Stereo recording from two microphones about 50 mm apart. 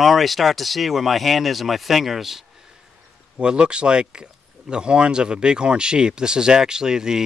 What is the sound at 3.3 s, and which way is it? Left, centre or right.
Speech, right.